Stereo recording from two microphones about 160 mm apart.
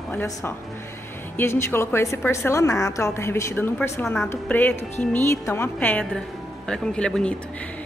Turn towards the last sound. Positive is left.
turn(degrees=5)  # may be behind; listen again after turning